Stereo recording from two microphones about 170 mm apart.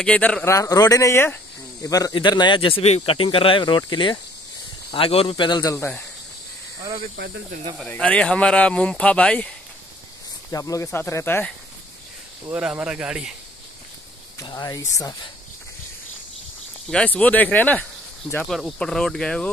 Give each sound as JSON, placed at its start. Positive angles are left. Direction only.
{"t": 0.0, "sound": "speech", "side_deg": 5}
{"t": 7.9, "sound": "speech", "side_deg": 5}
{"t": 10.5, "sound": "speech", "side_deg": 20}
{"t": 12.4, "sound": "speech", "side_deg": -10}
{"t": 14.4, "sound": "speech", "side_deg": 25}
{"t": 16.9, "sound": "speech", "side_deg": 10}